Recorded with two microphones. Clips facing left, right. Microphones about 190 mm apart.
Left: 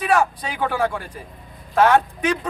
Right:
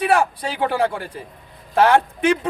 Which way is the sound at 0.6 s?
30° right (ahead or behind).